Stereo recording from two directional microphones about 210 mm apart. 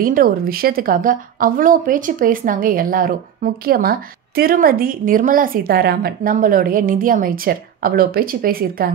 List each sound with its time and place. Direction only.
0.0 s a woman's voice: 40° right (ahead or behind)